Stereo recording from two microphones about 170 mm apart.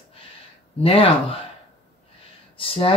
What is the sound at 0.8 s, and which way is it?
Speech, 35° left (ahead or behind).